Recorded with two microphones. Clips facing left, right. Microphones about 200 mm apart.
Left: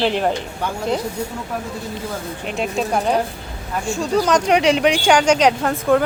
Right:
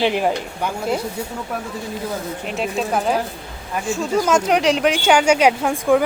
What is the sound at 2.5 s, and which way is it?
Speech, centre (ahead or behind).